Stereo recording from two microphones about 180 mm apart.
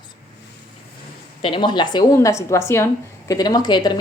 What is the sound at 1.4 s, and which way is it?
A woman's voice, 25° left (ahead or behind).